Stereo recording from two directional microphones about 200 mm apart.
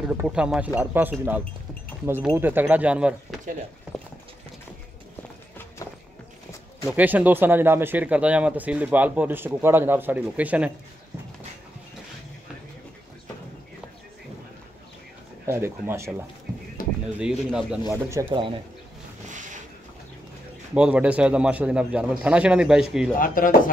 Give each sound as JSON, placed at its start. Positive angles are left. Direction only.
{"t": 0.1, "sound": "a man's voice", "side_deg": -5}
{"t": 6.9, "sound": "speech", "side_deg": -10}
{"t": 15.4, "sound": "speech", "side_deg": -10}
{"t": 16.8, "sound": "a sound", "side_deg": 40}
{"t": 17.2, "sound": "a man's voice", "side_deg": -5}
{"t": 17.8, "sound": "speech", "side_deg": -15}
{"t": 19.2, "sound": "boat", "side_deg": -40}
{"t": 20.7, "sound": "a man's voice", "side_deg": -5}
{"t": 23.1, "sound": "speech", "side_deg": 45}